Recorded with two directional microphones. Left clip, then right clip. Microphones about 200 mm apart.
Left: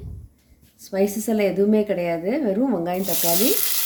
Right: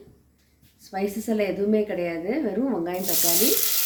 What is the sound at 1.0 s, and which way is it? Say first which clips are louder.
A woman's voice: left 5 dB; 60° left (ahead or behind).